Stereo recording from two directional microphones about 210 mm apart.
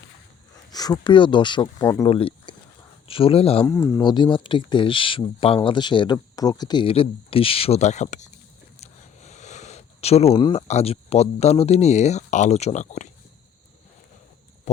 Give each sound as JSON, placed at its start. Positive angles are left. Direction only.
{"t": 0.7, "sound": "speech", "side_deg": 20}
{"t": 2.0, "sound": "a sound", "side_deg": 25}
{"t": 3.1, "sound": "speech", "side_deg": 25}
{"t": 3.7, "sound": "speech", "side_deg": 15}